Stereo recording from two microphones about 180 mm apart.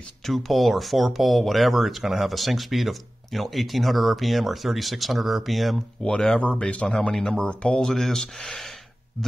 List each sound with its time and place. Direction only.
0.3 s speech: centre (ahead or behind)